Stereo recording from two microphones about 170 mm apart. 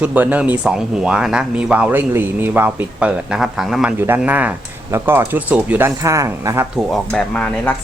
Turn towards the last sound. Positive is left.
turn(degrees=5)  # may be behind; listen again after turning